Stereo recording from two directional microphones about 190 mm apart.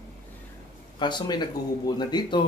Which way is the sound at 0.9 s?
25° left (ahead or behind).